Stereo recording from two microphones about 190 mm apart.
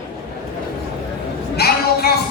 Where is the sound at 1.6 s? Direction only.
55° left (ahead or behind).